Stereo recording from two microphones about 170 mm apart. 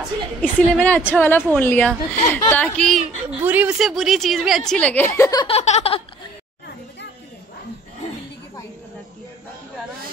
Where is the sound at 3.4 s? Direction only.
10° right (ahead or behind); by 5.4 s 20° left (ahead or behind).